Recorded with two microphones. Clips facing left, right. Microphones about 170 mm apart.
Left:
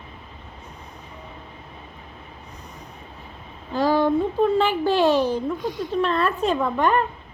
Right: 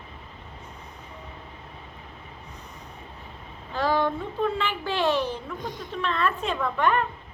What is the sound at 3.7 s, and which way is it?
A woman's voice, 35° left (ahead or behind).